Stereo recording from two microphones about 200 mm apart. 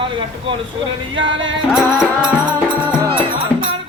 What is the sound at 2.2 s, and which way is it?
Music, 5° right (ahead or behind).